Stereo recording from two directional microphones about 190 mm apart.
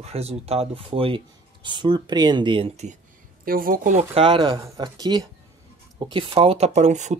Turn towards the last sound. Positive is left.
turn(degrees=-40)  # may be behind; listen again after turning